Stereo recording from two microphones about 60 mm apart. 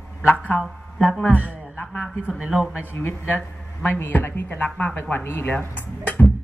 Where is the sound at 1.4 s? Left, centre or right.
Left.